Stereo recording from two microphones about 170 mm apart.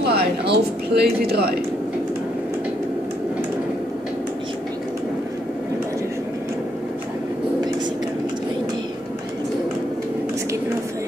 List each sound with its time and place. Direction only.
0.0 s speech: 70° right (ahead or behind)